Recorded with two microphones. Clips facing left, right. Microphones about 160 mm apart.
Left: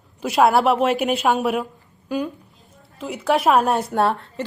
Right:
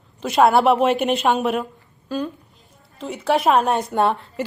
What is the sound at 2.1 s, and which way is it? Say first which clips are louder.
Speech: left 1 dB; 15° left (ahead or behind).